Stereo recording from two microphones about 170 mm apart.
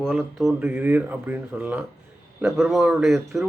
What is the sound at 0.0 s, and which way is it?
Speech, centre (ahead or behind).